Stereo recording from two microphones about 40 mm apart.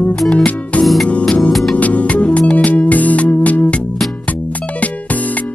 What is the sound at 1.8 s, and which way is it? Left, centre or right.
Music, left.